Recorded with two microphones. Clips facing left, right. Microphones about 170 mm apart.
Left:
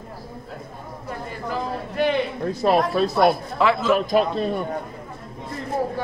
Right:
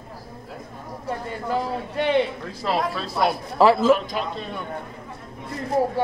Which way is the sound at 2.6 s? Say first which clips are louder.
Left 6 dB; 50° left (ahead or behind).